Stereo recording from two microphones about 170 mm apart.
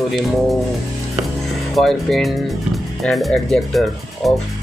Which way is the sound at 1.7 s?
Centre (ahead or behind).